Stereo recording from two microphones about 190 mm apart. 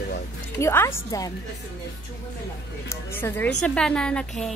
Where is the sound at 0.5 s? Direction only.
15° left (ahead or behind).